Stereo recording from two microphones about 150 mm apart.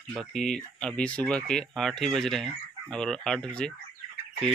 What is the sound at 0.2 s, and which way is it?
Speech, centre (ahead or behind).